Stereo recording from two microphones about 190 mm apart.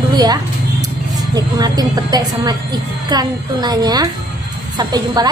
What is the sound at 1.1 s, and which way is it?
A woman's voice, 20° right (ahead or behind).